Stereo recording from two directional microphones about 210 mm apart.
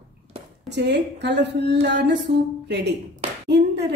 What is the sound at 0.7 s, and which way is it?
A woman's voice, 55° right (ahead or behind).